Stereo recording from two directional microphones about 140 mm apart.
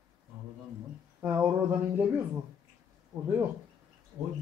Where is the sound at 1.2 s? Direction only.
15° right (ahead or behind).